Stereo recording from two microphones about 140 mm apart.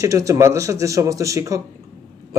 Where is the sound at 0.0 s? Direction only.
20° right (ahead or behind).